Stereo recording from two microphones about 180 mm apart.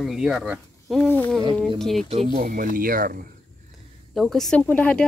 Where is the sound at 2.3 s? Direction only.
45° right (ahead or behind).